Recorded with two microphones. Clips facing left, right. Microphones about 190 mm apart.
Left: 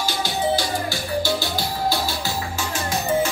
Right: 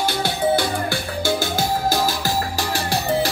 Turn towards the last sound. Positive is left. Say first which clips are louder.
# right 1 dB
turn(degrees=-35)  # may be behind; listen again after turning